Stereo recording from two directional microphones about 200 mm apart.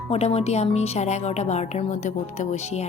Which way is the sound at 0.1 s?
30° left (ahead or behind).